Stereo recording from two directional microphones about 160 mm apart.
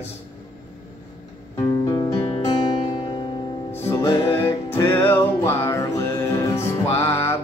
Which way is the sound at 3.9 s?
20° left (ahead or behind).